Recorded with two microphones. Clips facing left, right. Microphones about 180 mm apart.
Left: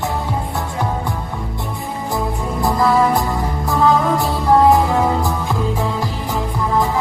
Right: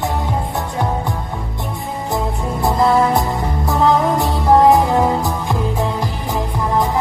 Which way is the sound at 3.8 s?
20° right (ahead or behind).